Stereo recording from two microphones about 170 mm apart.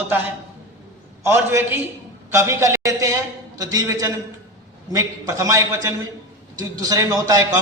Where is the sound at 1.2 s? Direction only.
15° right (ahead or behind).